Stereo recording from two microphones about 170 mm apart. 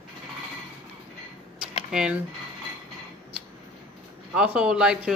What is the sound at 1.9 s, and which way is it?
Speech, 5° right (ahead or behind).